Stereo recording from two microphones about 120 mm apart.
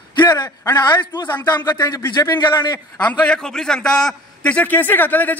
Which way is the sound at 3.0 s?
10° left (ahead or behind).